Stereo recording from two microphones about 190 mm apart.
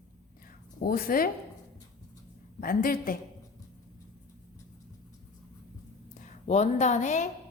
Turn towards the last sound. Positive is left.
turn(degrees=40)  # may be behind; listen again after turning